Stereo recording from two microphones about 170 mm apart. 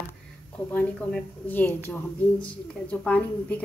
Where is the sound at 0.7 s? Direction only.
10° left (ahead or behind).